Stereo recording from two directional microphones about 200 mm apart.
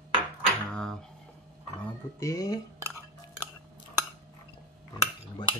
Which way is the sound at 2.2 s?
15° left (ahead or behind).